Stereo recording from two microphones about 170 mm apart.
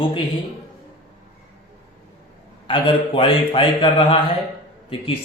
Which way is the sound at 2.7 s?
30° left (ahead or behind).